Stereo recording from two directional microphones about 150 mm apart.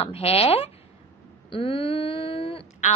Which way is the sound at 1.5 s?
35° left (ahead or behind).